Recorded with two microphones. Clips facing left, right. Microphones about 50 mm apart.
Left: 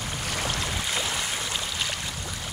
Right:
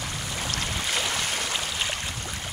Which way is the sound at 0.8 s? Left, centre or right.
Centre.